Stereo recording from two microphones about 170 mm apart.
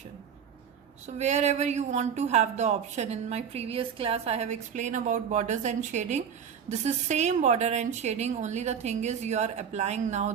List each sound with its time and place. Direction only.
1.0 s a woman's voice: 40° right (ahead or behind)